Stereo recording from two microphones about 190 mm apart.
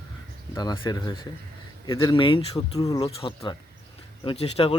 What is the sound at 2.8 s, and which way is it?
Speech, 20° left (ahead or behind).